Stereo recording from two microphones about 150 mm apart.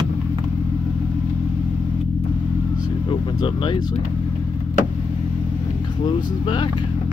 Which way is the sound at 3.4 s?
30° left (ahead or behind).